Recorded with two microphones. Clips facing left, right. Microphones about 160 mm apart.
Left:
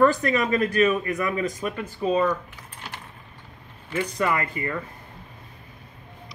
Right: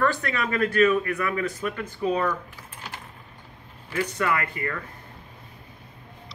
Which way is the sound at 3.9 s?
15° left (ahead or behind).